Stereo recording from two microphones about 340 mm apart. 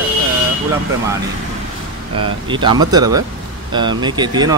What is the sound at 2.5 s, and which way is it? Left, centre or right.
Speech, centre.